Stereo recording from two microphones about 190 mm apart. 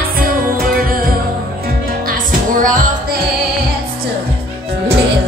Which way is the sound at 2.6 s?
45° right (ahead or behind).